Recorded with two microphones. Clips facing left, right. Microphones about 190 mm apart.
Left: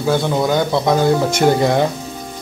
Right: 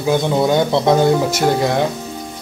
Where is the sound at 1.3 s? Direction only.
Centre (ahead or behind).